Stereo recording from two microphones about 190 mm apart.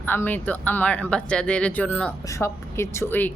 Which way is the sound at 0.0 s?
10° left (ahead or behind).